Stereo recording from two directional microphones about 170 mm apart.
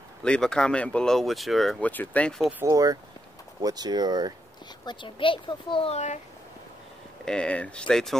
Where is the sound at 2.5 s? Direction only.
15° right (ahead or behind).